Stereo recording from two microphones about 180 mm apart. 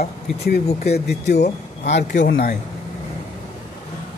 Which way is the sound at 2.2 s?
80° left.